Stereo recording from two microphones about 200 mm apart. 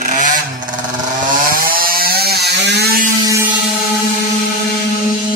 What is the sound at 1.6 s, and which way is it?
Chainsaw, 45° right (ahead or behind).